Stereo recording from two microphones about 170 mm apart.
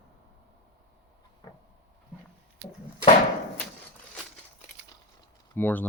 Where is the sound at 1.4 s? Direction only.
25° left (ahead or behind).